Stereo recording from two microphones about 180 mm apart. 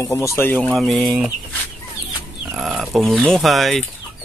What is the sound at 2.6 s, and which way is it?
Speech, centre (ahead or behind).